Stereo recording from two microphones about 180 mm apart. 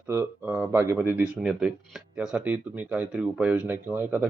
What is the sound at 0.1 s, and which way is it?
Speech, 15° right (ahead or behind).